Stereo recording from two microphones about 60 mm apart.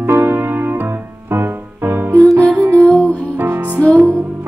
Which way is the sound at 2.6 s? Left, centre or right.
Right.